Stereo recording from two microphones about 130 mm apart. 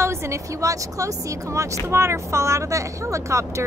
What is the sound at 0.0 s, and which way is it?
Speech, 20° right (ahead or behind).